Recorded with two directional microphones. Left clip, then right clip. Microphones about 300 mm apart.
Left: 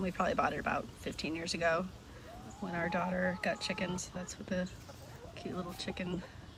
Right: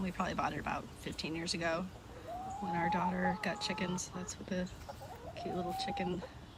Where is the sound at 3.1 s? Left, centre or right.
Left.